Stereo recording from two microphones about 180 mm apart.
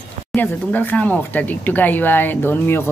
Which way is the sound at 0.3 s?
10° left (ahead or behind).